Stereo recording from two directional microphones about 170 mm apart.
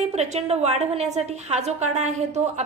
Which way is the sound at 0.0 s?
40° right (ahead or behind).